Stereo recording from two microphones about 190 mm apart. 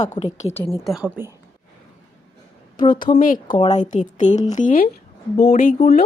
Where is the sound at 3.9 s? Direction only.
40° left (ahead or behind).